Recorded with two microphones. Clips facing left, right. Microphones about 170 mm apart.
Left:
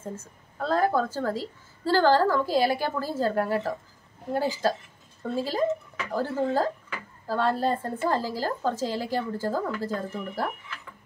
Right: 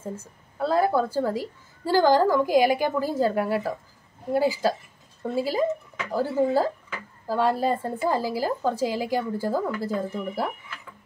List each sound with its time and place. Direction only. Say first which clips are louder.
0.6 s a woman's voice: right 2 dB; 10° right (ahead or behind)